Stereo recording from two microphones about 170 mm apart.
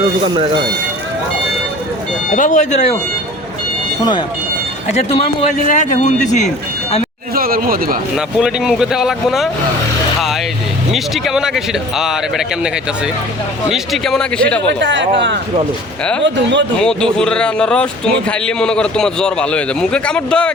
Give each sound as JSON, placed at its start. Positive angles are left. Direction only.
{"t": 2.3, "sound": "speech", "side_deg": 45}
{"t": 4.9, "sound": "speech", "side_deg": 35}
{"t": 5.6, "sound": "speech", "side_deg": 45}
{"t": 7.3, "sound": "a sound", "side_deg": -60}
{"t": 8.1, "sound": "speech", "side_deg": 0}
{"t": 10.9, "sound": "speech", "side_deg": 0}
{"t": 14.7, "sound": "speech", "side_deg": -90}
{"t": 16.7, "sound": "speech", "side_deg": 5}